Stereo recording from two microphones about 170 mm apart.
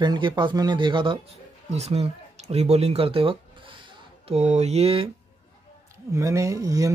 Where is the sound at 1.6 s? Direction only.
40° right (ahead or behind).